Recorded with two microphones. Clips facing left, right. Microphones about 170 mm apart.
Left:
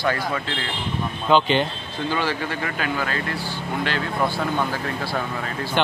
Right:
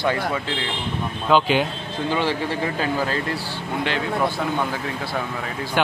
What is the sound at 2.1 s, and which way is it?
Speech, 25° right (ahead or behind).